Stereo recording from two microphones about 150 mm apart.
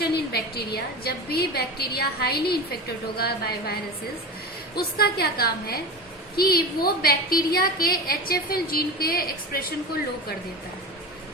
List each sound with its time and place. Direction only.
0.0 s a woman's voice: 90° left
4.8 s a woman's voice: 90° left